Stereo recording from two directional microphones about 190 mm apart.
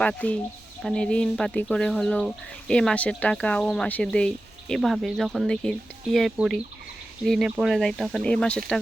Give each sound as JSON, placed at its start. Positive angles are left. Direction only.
{"t": 0.0, "sound": "speech", "side_deg": 5}